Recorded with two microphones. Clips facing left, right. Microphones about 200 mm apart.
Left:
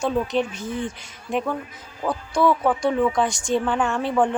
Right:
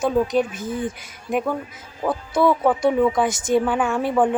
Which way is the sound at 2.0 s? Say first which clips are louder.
Right 2 dB; 5° right (ahead or behind).